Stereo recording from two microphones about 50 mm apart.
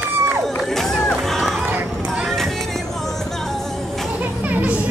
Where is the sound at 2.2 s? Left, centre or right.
Centre.